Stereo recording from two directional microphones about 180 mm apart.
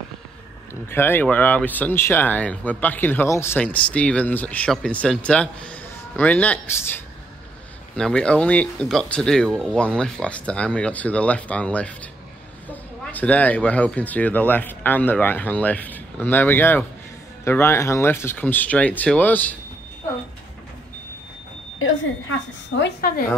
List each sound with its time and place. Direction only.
0.8 s speech: 10° left (ahead or behind)
22.8 s speech: 65° left (ahead or behind)